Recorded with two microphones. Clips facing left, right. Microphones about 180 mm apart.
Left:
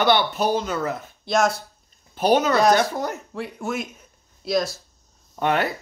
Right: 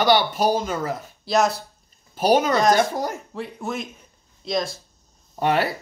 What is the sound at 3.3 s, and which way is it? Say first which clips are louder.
A woman's voice: left 1 dB; centre (ahead or behind).